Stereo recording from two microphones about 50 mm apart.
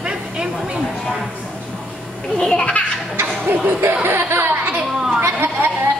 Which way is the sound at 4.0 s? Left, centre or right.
Right.